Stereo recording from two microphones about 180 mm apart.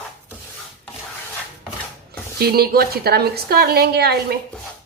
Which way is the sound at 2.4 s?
60° right (ahead or behind).